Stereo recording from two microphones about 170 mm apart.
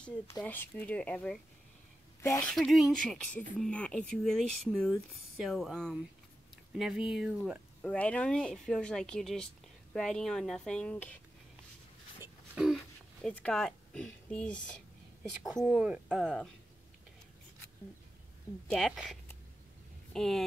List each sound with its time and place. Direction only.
0.4 s speech: 10° left (ahead or behind)
2.2 s speech: 15° left (ahead or behind)
2.5 s speech: centre (ahead or behind)
7.8 s speech: 5° left (ahead or behind)
12.5 s speech: centre (ahead or behind)
18.7 s speech: centre (ahead or behind)